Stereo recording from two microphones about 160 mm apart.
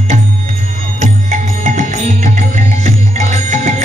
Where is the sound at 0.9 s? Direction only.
50° right (ahead or behind).